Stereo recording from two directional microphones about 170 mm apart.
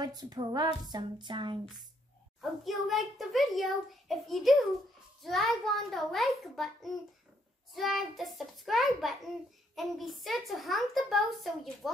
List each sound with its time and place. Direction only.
0.0 s a woman's voice: 25° right (ahead or behind)
2.4 s a child's voice: centre (ahead or behind)